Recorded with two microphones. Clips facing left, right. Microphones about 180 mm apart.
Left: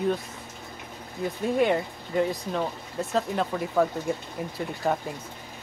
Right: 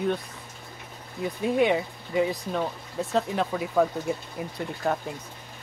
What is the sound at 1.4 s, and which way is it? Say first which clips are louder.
Speech: right 1 dB; centre (ahead or behind).